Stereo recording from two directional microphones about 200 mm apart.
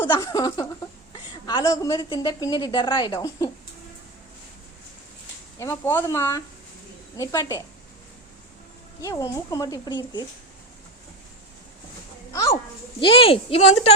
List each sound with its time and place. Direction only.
0.1 s a woman's voice: 15° left (ahead or behind)
5.5 s speech: 15° left (ahead or behind)
9.0 s a woman's voice: 15° left (ahead or behind)
12.3 s a child's voice: 15° left (ahead or behind)